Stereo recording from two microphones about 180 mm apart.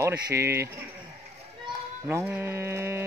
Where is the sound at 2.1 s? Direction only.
10° right (ahead or behind).